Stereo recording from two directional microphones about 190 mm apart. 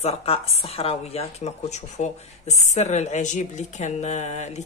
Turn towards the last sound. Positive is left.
turn(degrees=35)  # may be behind; listen again after turning